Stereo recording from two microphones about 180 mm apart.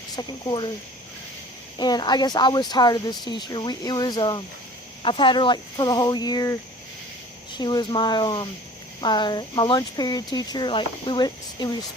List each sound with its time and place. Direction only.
0.2 s speech: 25° left (ahead or behind)
1.8 s speech: 25° left (ahead or behind)